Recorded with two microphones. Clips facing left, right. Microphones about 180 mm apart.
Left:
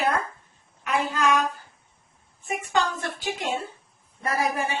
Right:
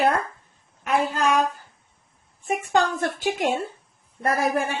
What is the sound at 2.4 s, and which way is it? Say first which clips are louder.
Speech: right 4 dB; 50° right (ahead or behind).